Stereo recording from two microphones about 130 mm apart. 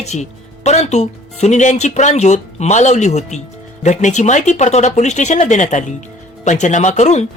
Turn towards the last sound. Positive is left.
turn(degrees=65)  # may be behind; listen again after turning